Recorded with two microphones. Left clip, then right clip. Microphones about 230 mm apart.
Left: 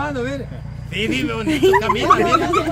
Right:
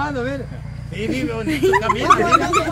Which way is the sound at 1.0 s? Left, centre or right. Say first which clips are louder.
Left 2 dB; left.